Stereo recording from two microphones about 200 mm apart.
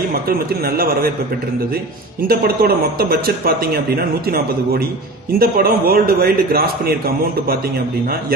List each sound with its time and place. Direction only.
0.7 s speech: 50° right (ahead or behind)
2.2 s speech: 50° right (ahead or behind)